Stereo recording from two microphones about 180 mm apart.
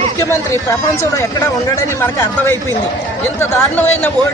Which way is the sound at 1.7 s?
15° left (ahead or behind).